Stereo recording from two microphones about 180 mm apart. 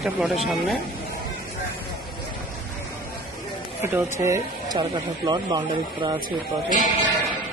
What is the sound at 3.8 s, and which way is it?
Speech, 15° right (ahead or behind).